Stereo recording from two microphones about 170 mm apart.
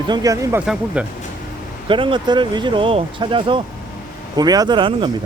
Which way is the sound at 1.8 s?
30° right (ahead or behind).